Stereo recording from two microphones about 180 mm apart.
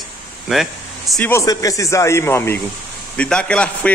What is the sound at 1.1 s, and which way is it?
Speech, 10° left (ahead or behind).